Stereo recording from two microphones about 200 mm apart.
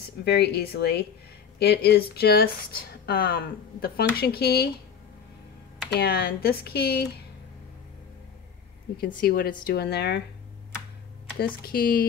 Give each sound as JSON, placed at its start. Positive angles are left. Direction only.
{"t": 0.2, "sound": "speech", "side_deg": 55}
{"t": 5.9, "sound": "speech", "side_deg": 50}
{"t": 9.2, "sound": "speech", "side_deg": 45}
{"t": 11.3, "sound": "speech", "side_deg": 50}